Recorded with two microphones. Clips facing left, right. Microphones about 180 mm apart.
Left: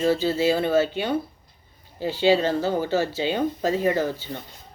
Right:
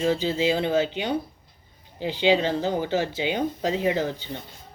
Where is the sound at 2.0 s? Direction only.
15° right (ahead or behind).